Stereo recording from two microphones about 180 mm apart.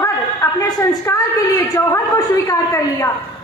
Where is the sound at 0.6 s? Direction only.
20° left (ahead or behind).